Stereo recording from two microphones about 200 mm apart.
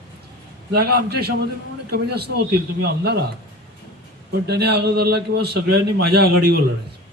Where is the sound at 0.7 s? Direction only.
55° right (ahead or behind).